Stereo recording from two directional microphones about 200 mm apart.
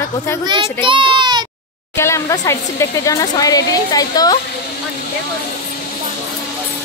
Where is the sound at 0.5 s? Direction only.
25° right (ahead or behind).